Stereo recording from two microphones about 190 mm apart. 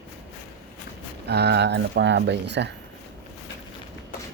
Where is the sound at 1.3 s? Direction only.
60° right (ahead or behind).